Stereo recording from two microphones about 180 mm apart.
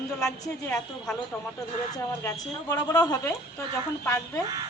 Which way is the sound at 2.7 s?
20° left (ahead or behind).